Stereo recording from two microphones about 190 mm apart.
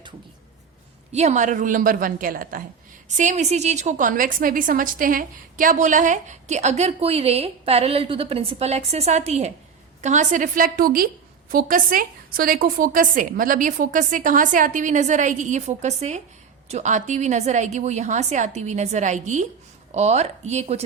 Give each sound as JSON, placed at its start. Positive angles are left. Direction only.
{"t": 1.1, "sound": "a woman's voice", "side_deg": -35}
{"t": 3.2, "sound": "a woman's voice", "side_deg": -40}